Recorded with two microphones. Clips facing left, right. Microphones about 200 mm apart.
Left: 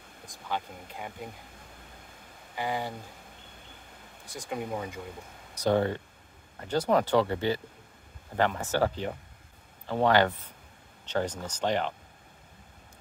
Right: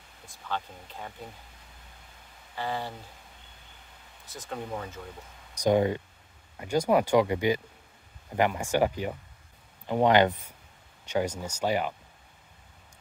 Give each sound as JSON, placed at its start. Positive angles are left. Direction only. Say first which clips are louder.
{"t": 0.3, "sound": "speech", "louder": "left 1 dB", "side_deg": 10}
{"t": 2.5, "sound": "speech", "louder": "left 1 dB", "side_deg": 15}
{"t": 4.3, "sound": "speech", "louder": "left 2 dB", "side_deg": 10}
{"t": 5.6, "sound": "speech", "louder": "right 2 dB", "side_deg": -15}